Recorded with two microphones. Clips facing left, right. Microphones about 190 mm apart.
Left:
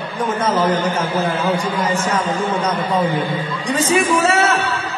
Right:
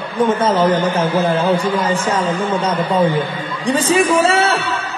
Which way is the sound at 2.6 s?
30° right (ahead or behind).